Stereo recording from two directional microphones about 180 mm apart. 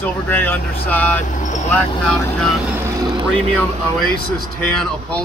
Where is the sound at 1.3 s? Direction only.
45° left (ahead or behind).